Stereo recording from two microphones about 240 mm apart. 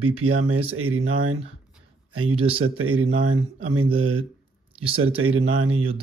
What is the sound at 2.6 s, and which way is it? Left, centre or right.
Speech, right.